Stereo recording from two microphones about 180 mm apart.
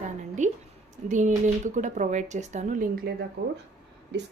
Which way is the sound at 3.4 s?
70° right (ahead or behind).